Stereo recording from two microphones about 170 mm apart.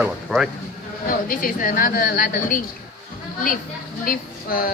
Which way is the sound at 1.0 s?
55° left (ahead or behind).